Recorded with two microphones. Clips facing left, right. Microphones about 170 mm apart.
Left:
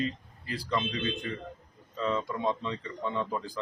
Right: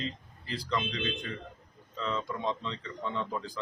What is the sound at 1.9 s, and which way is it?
A man's voice, 15° left (ahead or behind).